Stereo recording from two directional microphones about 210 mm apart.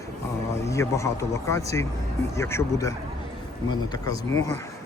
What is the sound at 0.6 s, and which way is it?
Speech, 15° left (ahead or behind).